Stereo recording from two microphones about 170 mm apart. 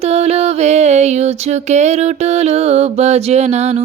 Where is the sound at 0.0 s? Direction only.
35° right (ahead or behind).